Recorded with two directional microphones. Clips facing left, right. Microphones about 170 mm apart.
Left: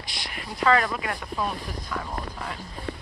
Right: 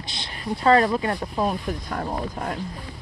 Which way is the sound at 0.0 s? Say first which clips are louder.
Right 1 dB; 25° right (ahead or behind).